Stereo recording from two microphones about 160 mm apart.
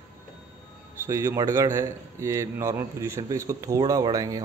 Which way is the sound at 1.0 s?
20° right (ahead or behind).